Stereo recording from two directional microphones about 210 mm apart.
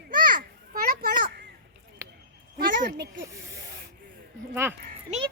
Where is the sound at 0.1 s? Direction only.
40° right (ahead or behind).